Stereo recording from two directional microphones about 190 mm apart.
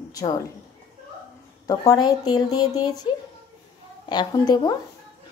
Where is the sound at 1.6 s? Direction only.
20° left (ahead or behind).